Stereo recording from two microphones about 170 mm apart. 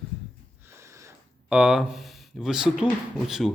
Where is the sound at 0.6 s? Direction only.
15° right (ahead or behind).